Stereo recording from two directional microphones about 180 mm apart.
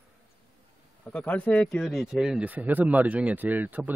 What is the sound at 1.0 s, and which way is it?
Speech, 10° left (ahead or behind).